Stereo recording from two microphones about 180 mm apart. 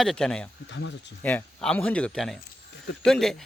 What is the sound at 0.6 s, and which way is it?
Speech, 85° left.